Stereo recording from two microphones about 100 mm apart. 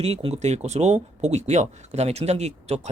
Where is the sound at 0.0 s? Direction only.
80° right.